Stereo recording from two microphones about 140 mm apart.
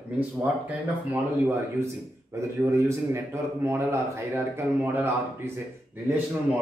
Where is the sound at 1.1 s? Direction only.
15° right (ahead or behind).